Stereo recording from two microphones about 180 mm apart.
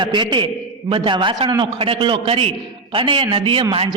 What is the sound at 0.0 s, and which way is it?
A man's voice, 25° right (ahead or behind).